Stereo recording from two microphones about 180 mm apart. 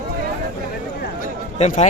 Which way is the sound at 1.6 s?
40° left (ahead or behind).